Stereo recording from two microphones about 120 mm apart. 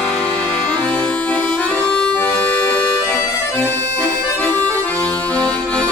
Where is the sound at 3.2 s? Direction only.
20° left (ahead or behind).